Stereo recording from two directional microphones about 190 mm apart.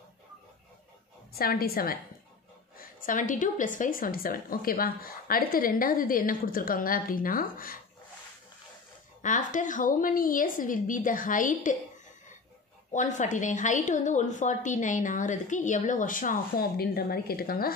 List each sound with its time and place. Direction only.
1.3 s a woman's voice: 50° left (ahead or behind)
9.2 s a woman's voice: 40° left (ahead or behind)
12.9 s a woman's voice: 40° left (ahead or behind)